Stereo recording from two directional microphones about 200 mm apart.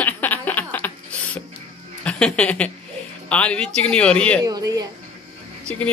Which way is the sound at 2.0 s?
5° left (ahead or behind).